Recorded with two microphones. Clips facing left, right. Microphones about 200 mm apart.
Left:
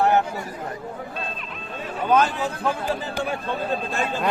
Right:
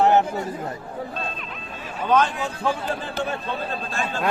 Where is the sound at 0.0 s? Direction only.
20° right (ahead or behind).